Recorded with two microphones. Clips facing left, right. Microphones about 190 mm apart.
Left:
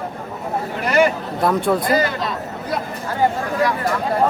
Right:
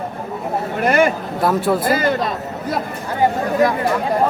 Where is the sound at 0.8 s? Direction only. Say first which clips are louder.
Right 1 dB; 50° right (ahead or behind).